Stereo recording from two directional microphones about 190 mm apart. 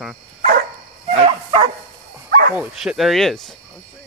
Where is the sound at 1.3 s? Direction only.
25° right (ahead or behind).